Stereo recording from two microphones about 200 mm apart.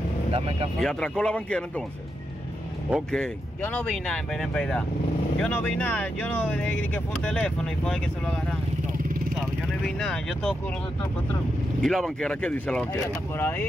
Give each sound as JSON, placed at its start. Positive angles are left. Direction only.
{"t": 0.3, "sound": "speech", "side_deg": -25}
{"t": 0.7, "sound": "speech", "side_deg": 5}
{"t": 2.9, "sound": "speech", "side_deg": 5}
{"t": 9.8, "sound": "speech", "side_deg": 5}
{"t": 11.8, "sound": "speech", "side_deg": 0}